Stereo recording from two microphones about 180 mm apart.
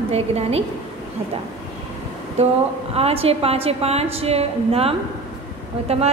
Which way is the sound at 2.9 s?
35° right (ahead or behind).